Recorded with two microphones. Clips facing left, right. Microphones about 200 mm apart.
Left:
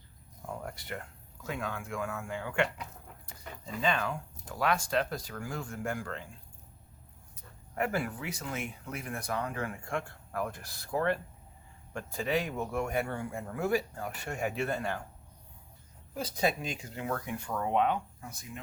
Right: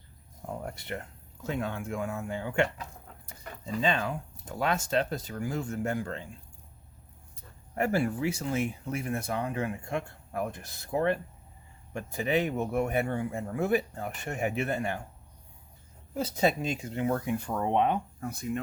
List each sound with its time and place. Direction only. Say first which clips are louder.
0.4 s speech: right 3 dB; 25° right (ahead or behind)
3.8 s speech: right 2 dB; 20° right (ahead or behind)
7.8 s speech: right 5 dB; 30° right (ahead or behind)
16.1 s speech: right 4 dB; 25° right (ahead or behind)
18.2 s speech: right 12 dB; 60° right (ahead or behind)